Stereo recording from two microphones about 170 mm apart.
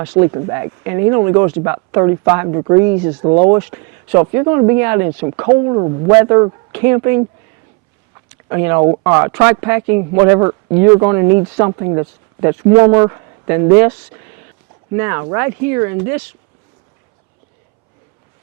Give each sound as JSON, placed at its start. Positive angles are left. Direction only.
{"t": 0.2, "sound": "speech", "side_deg": -20}
{"t": 3.6, "sound": "speech", "side_deg": -15}
{"t": 5.0, "sound": "speech", "side_deg": -25}
{"t": 8.4, "sound": "speech", "side_deg": -15}
{"t": 14.9, "sound": "speech", "side_deg": -15}